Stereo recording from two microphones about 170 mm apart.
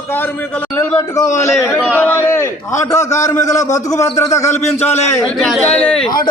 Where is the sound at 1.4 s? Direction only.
15° left (ahead or behind).